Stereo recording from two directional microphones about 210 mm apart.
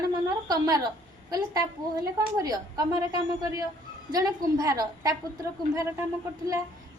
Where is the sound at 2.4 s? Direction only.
20° right (ahead or behind).